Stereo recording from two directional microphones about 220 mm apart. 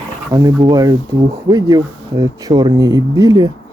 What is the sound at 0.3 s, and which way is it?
Speech, 15° right (ahead or behind).